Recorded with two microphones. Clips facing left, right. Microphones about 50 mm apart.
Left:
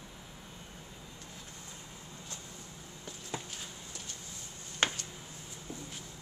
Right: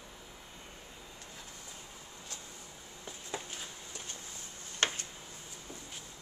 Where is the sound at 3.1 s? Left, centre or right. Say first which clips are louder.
Even; centre.